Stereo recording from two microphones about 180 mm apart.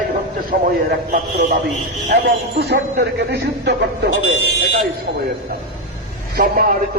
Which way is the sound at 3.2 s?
65° right (ahead or behind).